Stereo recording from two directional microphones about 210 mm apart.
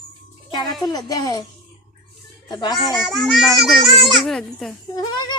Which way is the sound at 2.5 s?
20° left (ahead or behind).